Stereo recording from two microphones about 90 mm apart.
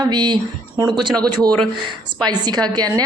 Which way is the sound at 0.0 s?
50° right (ahead or behind).